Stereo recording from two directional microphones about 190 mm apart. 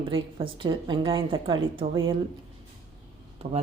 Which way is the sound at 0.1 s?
25° right (ahead or behind).